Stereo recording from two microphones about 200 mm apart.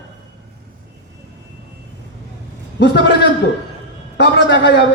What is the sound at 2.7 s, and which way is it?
Speech, 60° left (ahead or behind).